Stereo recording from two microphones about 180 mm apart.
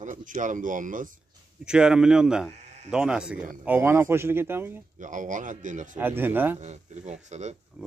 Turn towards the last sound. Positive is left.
turn(degrees=-40)  # may be behind; listen again after turning